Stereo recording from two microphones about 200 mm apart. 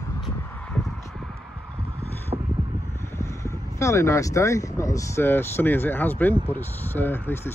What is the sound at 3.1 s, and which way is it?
Speech, 15° left (ahead or behind).